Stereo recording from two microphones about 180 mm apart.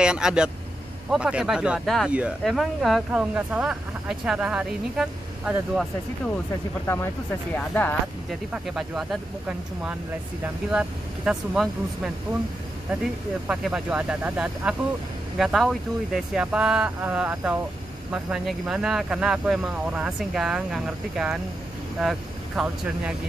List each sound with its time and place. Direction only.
0.0 s speech: 5° right (ahead or behind)
7.5 s speech: 10° left (ahead or behind)
8.7 s speech: centre (ahead or behind)
13.5 s speech: 5° right (ahead or behind)
22.6 s speech: centre (ahead or behind)